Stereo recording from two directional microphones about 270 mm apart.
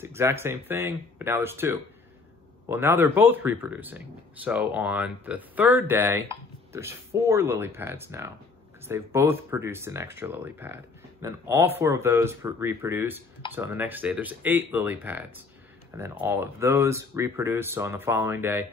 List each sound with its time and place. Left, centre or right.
0.0 s speech: centre